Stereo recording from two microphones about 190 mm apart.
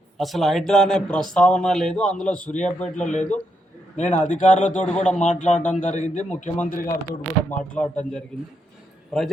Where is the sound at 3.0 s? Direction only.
40° left (ahead or behind).